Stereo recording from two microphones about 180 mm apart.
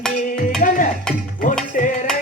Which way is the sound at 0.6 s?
50° left (ahead or behind).